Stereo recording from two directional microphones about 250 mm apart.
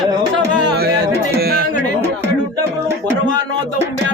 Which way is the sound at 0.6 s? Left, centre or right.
Right.